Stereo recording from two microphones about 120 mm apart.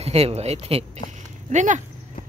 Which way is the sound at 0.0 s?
60° right (ahead or behind).